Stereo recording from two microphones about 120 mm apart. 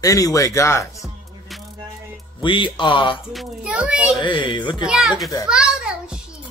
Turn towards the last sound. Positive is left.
turn(degrees=-5)  # may be behind; listen again after turning